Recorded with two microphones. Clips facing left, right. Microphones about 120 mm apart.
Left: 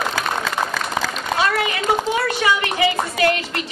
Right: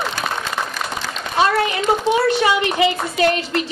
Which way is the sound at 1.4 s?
25° right (ahead or behind).